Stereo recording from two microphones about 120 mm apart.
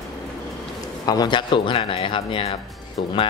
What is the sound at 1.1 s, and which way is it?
Speech, 35° left (ahead or behind).